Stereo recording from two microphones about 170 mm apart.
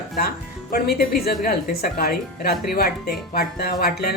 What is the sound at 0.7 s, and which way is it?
Speech, 65° left (ahead or behind).